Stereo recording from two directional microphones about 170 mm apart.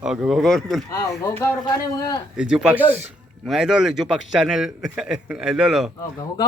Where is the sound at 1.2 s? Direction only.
15° left (ahead or behind).